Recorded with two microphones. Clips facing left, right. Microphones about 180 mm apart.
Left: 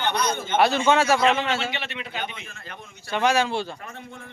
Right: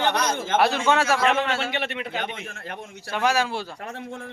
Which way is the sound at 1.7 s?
55° right (ahead or behind).